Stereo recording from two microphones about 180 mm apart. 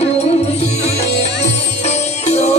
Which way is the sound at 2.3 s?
35° left (ahead or behind).